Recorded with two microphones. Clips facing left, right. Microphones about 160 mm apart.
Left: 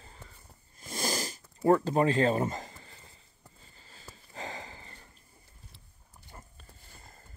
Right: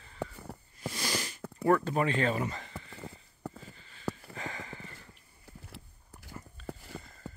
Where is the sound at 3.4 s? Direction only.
90° right.